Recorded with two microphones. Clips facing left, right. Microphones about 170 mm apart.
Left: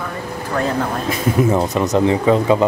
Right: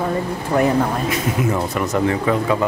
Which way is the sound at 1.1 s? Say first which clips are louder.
Left 4 dB; 25° left (ahead or behind).